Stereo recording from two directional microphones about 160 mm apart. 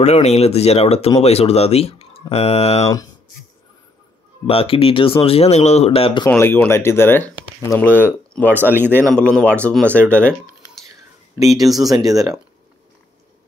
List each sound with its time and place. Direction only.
0.0 s speech: 40° left (ahead or behind)
4.5 s speech: 35° left (ahead or behind)
6.2 s speech: 15° left (ahead or behind)
8.5 s speech: 15° right (ahead or behind)
9.0 s speech: 5° left (ahead or behind)
11.7 s speech: centre (ahead or behind)
12.0 s speech: 20° right (ahead or behind)